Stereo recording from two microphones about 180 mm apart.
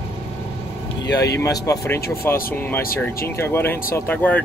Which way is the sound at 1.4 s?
15° left (ahead or behind).